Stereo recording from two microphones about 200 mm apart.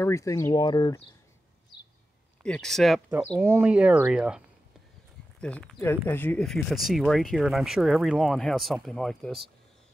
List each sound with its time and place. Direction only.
0.0 s speech: 15° left (ahead or behind)
2.4 s speech: 5° left (ahead or behind)
3.1 s speech: 10° right (ahead or behind)
5.4 s speech: 5° left (ahead or behind)